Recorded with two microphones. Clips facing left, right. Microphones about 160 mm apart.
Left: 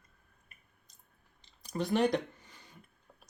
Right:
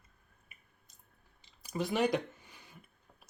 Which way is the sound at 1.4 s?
5° right (ahead or behind).